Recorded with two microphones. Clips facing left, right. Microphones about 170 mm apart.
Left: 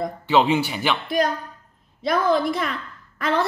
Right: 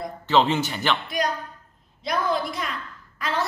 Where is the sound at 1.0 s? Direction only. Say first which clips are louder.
Left 4 dB; 50° left (ahead or behind).